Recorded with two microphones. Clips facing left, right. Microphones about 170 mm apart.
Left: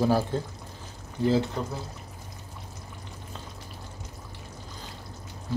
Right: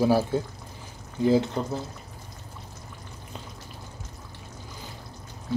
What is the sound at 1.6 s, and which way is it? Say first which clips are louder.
Speech: right 3 dB; 20° right (ahead or behind).